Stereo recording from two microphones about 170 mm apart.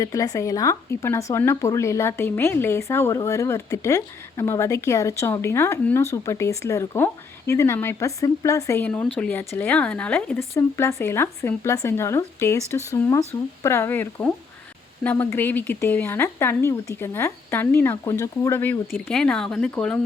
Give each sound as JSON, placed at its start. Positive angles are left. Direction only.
{"t": 0.0, "sound": "speech", "side_deg": 20}